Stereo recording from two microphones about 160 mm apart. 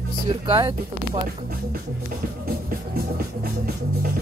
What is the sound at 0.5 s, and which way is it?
Speech, 30° right (ahead or behind).